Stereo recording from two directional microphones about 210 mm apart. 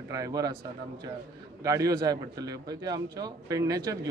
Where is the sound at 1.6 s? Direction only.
15° right (ahead or behind).